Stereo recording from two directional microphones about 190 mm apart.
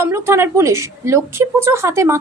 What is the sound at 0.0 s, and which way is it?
A woman's voice, 15° right (ahead or behind).